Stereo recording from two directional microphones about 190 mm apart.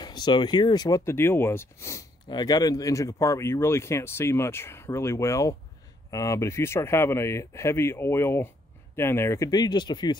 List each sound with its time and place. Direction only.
0.0 s speech: 20° left (ahead or behind)